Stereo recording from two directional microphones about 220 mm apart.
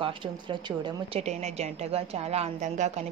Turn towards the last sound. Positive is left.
turn(degrees=-30)  # may be behind; listen again after turning